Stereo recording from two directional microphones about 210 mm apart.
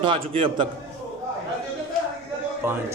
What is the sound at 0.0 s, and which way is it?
Speech, 25° right (ahead or behind).